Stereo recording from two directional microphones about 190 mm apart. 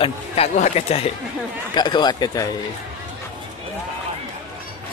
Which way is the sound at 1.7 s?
20° left (ahead or behind).